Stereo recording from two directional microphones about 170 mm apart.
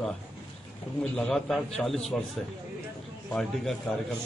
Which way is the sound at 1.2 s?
5° left (ahead or behind).